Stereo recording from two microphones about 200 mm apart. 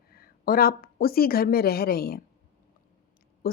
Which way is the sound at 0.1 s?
50° left (ahead or behind).